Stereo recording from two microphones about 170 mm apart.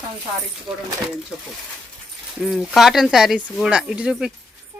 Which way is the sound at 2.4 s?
Centre (ahead or behind).